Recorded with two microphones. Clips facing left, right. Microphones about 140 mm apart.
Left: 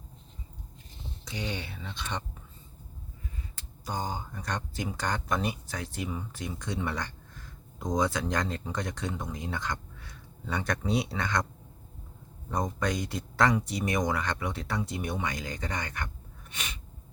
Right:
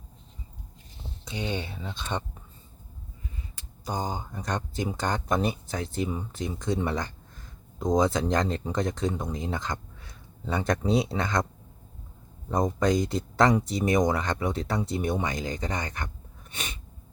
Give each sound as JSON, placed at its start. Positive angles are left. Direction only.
{"t": 1.2, "sound": "speech", "side_deg": -25}
{"t": 3.8, "sound": "speech", "side_deg": -20}
{"t": 12.5, "sound": "speech", "side_deg": -25}
{"t": 16.5, "sound": "a sound", "side_deg": -25}